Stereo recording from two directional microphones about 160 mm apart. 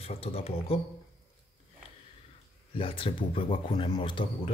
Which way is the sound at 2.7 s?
35° left (ahead or behind).